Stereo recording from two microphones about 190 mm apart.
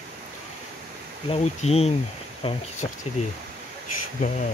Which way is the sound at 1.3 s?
35° left (ahead or behind).